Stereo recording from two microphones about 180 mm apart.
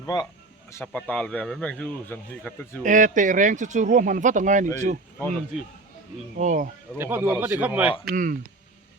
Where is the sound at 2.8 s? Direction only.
45° right (ahead or behind).